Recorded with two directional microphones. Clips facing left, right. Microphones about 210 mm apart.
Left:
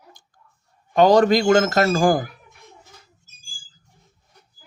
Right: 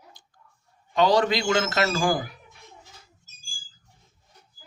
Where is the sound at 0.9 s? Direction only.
50° left (ahead or behind).